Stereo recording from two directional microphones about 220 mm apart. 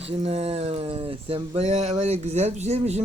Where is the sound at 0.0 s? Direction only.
25° right (ahead or behind).